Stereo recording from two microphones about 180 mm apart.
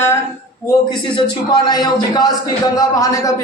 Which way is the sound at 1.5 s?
25° left (ahead or behind).